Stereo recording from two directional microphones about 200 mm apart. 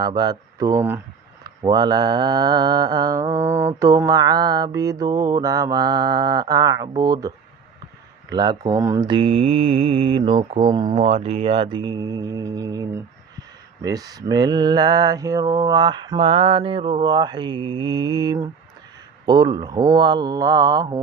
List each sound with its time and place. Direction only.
0.0 s mantra: 20° right (ahead or behind)
7.0 s speech: 20° right (ahead or behind)
8.3 s mantra: 20° right (ahead or behind)